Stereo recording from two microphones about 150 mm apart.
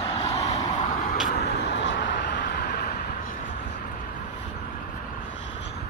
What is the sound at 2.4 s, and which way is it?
Vehicle, 80° left.